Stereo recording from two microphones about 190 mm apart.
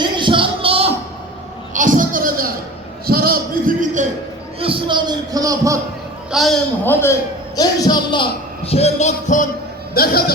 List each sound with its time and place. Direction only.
0.0 s a sound: 25° right (ahead or behind)
1.7 s a sound: 45° right (ahead or behind)
4.6 s speech: 25° right (ahead or behind)
6.3 s a man's voice: centre (ahead or behind)
6.8 s a man's voice: 10° left (ahead or behind); by 9.5 s 40° left (ahead or behind)
9.9 s speech: 50° left (ahead or behind)